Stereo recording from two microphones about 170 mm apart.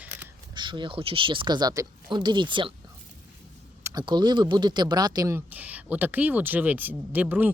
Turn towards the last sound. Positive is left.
turn(degrees=-10)  # may be behind; listen again after turning